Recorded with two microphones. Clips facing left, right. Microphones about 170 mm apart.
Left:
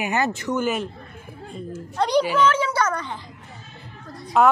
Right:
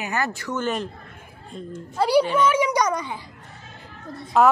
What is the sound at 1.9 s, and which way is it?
A child's voice, 5° right (ahead or behind).